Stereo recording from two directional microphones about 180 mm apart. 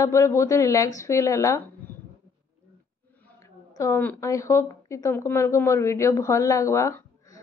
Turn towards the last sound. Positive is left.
turn(degrees=15)  # may be behind; listen again after turning